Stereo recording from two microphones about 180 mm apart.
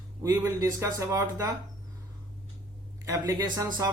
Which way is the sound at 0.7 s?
15° right (ahead or behind).